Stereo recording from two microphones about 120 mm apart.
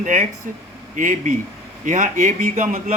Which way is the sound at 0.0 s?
90° right.